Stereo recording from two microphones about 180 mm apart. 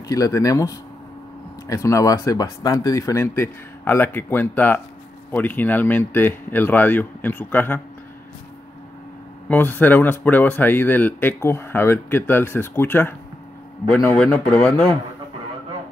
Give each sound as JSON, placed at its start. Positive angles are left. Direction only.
{"t": 0.1, "sound": "speech", "side_deg": 20}
{"t": 9.5, "sound": "a man's voice", "side_deg": 10}